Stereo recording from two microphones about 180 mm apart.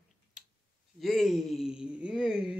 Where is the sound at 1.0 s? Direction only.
Centre (ahead or behind).